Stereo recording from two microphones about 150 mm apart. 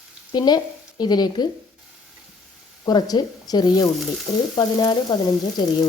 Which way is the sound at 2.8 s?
25° left (ahead or behind).